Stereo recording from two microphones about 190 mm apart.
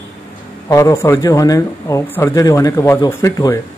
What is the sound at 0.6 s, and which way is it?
Speech, 15° left (ahead or behind).